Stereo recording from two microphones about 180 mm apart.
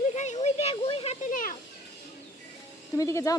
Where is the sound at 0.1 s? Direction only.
40° left (ahead or behind).